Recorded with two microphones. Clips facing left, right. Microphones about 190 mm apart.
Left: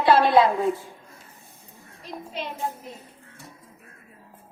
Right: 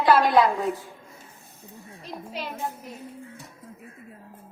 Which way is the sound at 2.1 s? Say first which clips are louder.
Left 1 dB; 5° right (ahead or behind).